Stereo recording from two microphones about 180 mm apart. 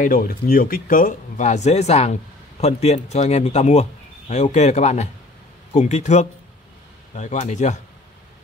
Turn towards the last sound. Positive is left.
turn(degrees=40)  # may be behind; listen again after turning